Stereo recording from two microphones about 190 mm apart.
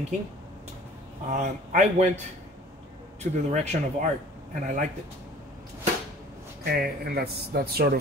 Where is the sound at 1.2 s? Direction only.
40° right (ahead or behind).